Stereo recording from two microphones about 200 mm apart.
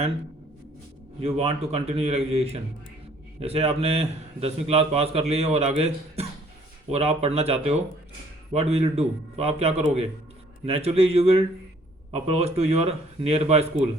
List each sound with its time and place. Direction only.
1.2 s a man's voice: 30° right (ahead or behind)